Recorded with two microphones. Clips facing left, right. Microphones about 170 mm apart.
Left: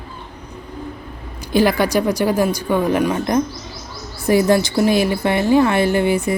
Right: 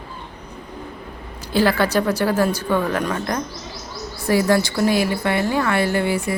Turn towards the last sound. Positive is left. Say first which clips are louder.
# left 4 dB
turn(degrees=20)  # may be behind; listen again after turning